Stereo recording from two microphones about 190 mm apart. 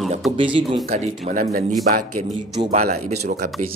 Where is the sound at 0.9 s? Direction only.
40° right (ahead or behind); by 3.5 s 55° right (ahead or behind).